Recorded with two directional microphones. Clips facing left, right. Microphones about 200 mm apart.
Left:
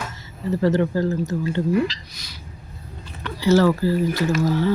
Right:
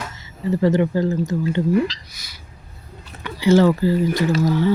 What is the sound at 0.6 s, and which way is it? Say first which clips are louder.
Speech: right 1 dB; 15° right (ahead or behind).